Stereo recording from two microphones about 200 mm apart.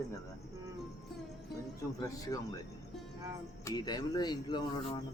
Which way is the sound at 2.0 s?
15° left (ahead or behind).